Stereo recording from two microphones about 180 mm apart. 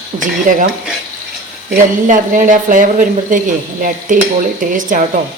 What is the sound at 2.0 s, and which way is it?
A woman's voice, 45° right (ahead or behind).